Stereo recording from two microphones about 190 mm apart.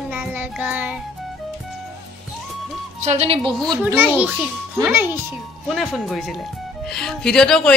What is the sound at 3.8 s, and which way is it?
Child singing, 10° right (ahead or behind).